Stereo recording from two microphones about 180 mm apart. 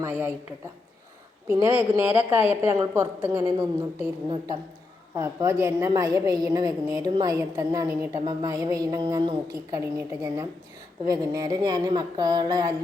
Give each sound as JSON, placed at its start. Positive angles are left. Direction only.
{"t": 0.0, "sound": "a woman's voice", "side_deg": -10}
{"t": 1.5, "sound": "speech", "side_deg": -15}
{"t": 5.1, "sound": "a woman's voice", "side_deg": -15}